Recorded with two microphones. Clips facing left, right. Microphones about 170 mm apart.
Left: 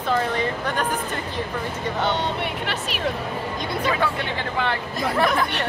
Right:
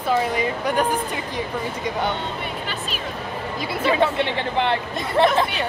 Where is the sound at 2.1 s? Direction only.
70° left (ahead or behind).